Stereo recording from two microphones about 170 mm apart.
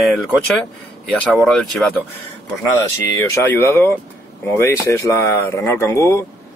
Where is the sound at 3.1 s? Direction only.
15° left (ahead or behind).